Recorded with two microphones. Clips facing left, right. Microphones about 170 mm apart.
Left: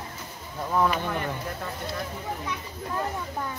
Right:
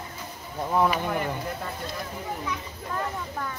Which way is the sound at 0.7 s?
15° right (ahead or behind).